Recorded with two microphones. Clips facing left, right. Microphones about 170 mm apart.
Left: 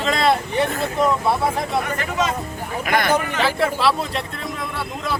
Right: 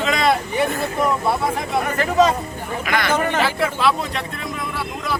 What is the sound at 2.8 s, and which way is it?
Speech, 50° left (ahead or behind).